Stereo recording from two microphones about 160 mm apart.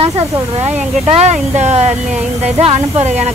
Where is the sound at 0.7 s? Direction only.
45° right (ahead or behind).